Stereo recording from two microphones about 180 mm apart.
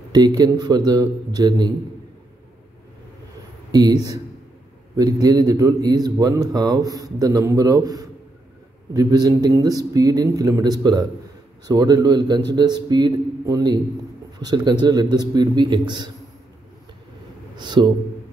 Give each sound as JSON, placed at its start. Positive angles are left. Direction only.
{"t": 0.1, "sound": "a man's voice", "side_deg": -20}
{"t": 3.7, "sound": "a man's voice", "side_deg": -20}
{"t": 17.6, "sound": "a man's voice", "side_deg": -25}